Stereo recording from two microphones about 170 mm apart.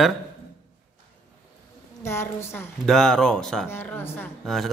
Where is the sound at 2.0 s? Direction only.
15° left (ahead or behind).